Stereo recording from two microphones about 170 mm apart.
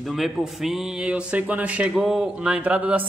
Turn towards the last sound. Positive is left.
turn(degrees=-10)  # may be behind; listen again after turning